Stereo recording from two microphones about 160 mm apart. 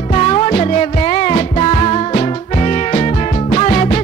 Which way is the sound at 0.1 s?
35° left (ahead or behind).